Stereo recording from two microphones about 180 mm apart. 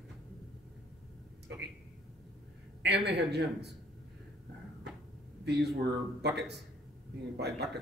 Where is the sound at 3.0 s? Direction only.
70° right (ahead or behind).